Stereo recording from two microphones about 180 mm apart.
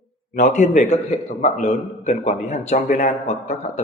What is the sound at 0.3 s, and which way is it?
A man's voice, 45° left (ahead or behind).